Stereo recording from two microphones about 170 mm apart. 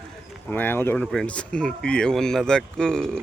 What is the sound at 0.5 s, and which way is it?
Speech, 10° left (ahead or behind).